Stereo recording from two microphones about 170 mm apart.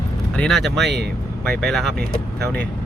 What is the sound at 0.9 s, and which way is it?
Speech, 75° right (ahead or behind).